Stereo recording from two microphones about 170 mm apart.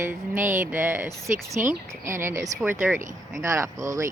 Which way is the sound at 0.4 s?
50° right (ahead or behind).